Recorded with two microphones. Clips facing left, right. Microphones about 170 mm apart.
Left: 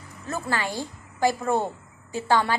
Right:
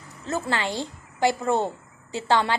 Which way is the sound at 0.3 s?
20° right (ahead or behind).